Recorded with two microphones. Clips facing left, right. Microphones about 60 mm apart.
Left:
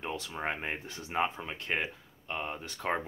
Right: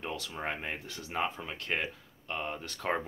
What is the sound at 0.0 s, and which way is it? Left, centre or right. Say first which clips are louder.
Speech: left 1 dB; centre.